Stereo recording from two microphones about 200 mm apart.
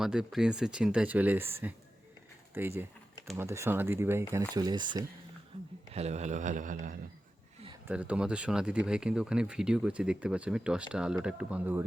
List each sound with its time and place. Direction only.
0.0 s speech: 5° right (ahead or behind); by 5.0 s 20° right (ahead or behind)
5.9 s speech: 35° right (ahead or behind)
7.9 s speech: 5° right (ahead or behind)